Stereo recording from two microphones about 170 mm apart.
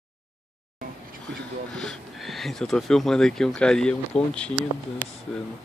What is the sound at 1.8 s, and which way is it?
Speech, centre (ahead or behind).